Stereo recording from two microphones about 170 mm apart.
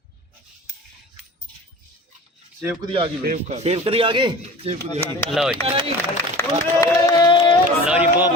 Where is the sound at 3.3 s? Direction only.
40° right (ahead or behind).